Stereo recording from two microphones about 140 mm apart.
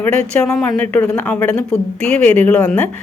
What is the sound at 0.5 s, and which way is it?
A woman's voice, 25° left (ahead or behind).